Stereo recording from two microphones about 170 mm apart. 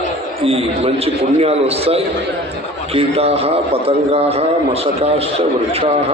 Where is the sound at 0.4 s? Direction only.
35° right (ahead or behind).